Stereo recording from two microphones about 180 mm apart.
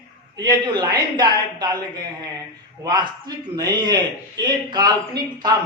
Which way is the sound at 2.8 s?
25° right (ahead or behind).